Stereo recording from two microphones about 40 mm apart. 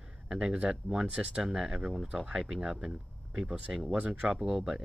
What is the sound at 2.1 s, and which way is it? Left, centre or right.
Speech, right.